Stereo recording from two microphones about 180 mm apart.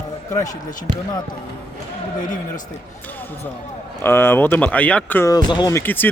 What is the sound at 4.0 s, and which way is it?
Speech, 15° left (ahead or behind).